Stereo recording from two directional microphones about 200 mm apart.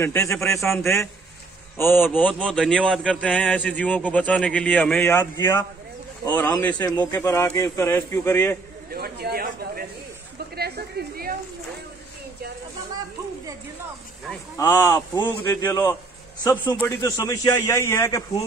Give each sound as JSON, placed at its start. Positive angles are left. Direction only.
{"t": 0.0, "sound": "a man's voice", "side_deg": 15}
{"t": 8.9, "sound": "a sound", "side_deg": -50}
{"t": 10.5, "sound": "a woman's voice", "side_deg": -50}
{"t": 14.6, "sound": "a man's voice", "side_deg": 15}